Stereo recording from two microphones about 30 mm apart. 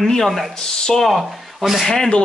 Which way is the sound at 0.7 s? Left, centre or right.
Left.